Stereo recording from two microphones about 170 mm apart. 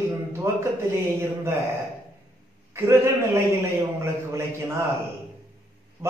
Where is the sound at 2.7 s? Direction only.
15° right (ahead or behind).